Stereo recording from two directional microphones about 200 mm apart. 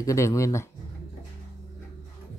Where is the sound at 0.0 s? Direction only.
15° left (ahead or behind).